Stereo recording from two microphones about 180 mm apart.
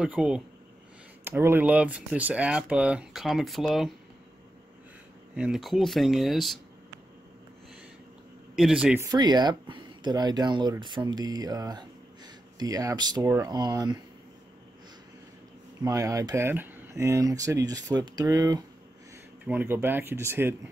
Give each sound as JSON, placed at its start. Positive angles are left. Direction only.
{"t": 0.0, "sound": "speech", "side_deg": -5}
{"t": 5.3, "sound": "speech", "side_deg": -5}
{"t": 8.5, "sound": "speech", "side_deg": -5}
{"t": 9.0, "sound": "speech", "side_deg": -25}
{"t": 15.8, "sound": "speech", "side_deg": -20}